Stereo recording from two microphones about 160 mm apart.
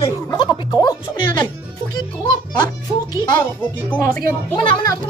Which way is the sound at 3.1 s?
30° left (ahead or behind).